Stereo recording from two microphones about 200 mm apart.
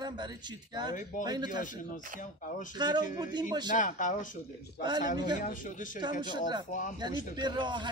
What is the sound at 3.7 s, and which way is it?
Speech, 40° left (ahead or behind).